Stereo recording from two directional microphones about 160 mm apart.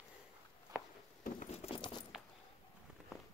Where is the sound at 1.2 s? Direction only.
55° left (ahead or behind).